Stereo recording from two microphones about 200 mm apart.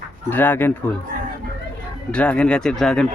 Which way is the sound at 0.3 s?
10° left (ahead or behind).